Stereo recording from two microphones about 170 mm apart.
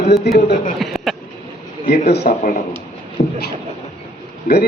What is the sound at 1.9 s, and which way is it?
Speech, 75° left (ahead or behind).